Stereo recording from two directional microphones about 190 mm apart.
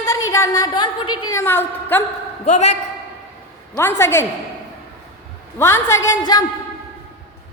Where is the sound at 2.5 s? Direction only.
35° left (ahead or behind).